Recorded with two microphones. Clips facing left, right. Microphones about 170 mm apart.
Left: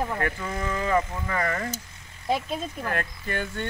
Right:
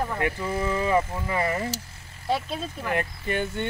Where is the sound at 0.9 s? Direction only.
10° right (ahead or behind).